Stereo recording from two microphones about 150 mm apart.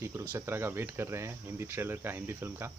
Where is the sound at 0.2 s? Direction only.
15° right (ahead or behind).